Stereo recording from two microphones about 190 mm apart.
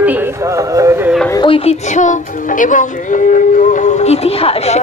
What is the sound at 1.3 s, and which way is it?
Speech, 25° left (ahead or behind).